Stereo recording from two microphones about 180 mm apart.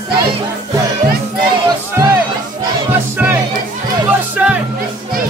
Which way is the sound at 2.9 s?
10° right (ahead or behind).